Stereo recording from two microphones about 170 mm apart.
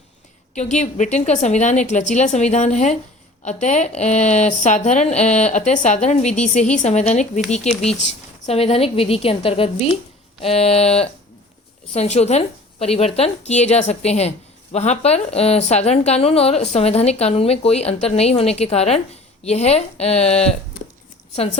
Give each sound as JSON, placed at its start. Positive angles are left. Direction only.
{"t": 0.5, "sound": "a woman's voice", "side_deg": 45}